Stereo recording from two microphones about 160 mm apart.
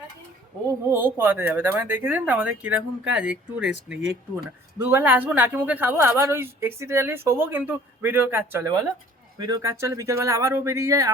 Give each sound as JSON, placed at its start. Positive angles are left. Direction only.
{"t": 0.7, "sound": "a woman's voice", "side_deg": -15}
{"t": 4.8, "sound": "a woman's voice", "side_deg": -10}